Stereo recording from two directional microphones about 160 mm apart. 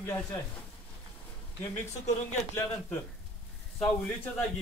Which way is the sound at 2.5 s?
15° left (ahead or behind).